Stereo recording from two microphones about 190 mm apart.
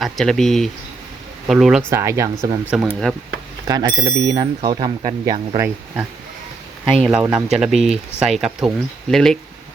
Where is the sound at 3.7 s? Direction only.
20° right (ahead or behind).